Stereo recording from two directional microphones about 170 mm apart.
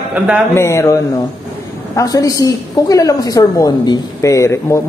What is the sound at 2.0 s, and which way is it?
A woman's voice, 20° left (ahead or behind).